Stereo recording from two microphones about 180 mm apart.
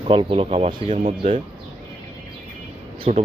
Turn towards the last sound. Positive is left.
turn(degrees=-35)  # may be behind; listen again after turning